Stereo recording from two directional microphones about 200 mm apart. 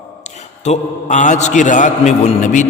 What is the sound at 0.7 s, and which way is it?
A man's voice, 35° left (ahead or behind).